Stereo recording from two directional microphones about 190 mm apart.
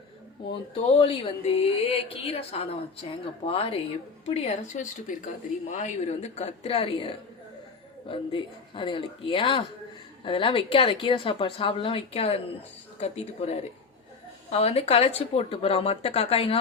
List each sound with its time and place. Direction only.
0.7 s a woman's voice: 30° left (ahead or behind)